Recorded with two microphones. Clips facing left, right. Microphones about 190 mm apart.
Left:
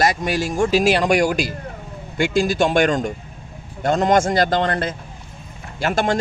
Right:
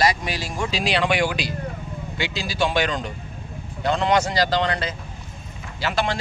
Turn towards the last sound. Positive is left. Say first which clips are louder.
# left 4 dB
turn(degrees=50)  # may be behind; listen again after turning